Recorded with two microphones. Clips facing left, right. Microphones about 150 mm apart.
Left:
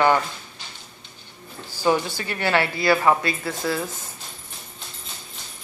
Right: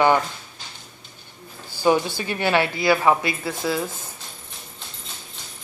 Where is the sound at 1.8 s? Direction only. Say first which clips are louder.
Right 2 dB; 15° right (ahead or behind).